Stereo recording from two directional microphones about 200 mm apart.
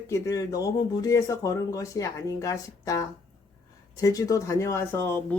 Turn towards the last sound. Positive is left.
turn(degrees=10)  # may be behind; listen again after turning